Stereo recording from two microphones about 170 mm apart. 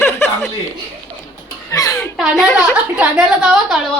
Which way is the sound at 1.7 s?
20° left (ahead or behind).